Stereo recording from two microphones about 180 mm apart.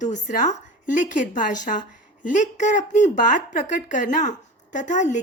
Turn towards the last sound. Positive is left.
turn(degrees=45)  # may be behind; listen again after turning